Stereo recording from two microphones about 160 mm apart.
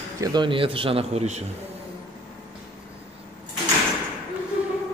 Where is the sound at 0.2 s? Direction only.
25° right (ahead or behind); by 1.4 s 45° right (ahead or behind).